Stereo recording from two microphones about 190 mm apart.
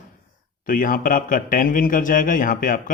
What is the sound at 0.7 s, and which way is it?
Speech, 45° left (ahead or behind).